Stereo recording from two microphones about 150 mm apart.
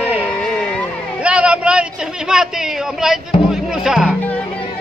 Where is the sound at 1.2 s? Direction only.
10° right (ahead or behind).